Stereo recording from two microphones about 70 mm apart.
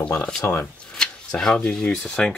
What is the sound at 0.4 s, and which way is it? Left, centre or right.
Speech, left.